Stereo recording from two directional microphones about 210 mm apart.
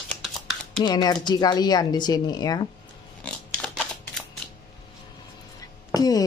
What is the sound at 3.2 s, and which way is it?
Pig, 5° left (ahead or behind).